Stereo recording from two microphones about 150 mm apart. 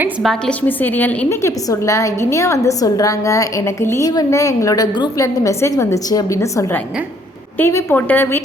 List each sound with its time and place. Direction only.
0.2 s a woman's voice: centre (ahead or behind)
0.8 s a woman's voice: 10° left (ahead or behind)